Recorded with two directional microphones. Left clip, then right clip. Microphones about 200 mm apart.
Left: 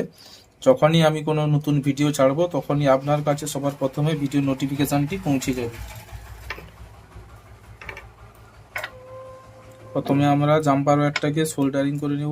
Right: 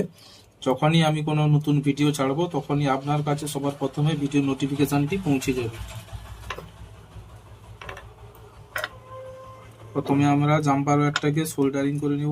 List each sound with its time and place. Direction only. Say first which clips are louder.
0.6 s speech: left 6 dB; 50° left (ahead or behind)
10.0 s speech: left 2 dB; 45° left (ahead or behind)